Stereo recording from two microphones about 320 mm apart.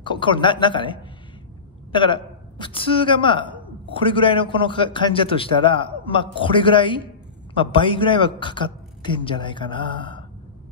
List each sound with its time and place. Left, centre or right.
0.0 s a woman's voice: centre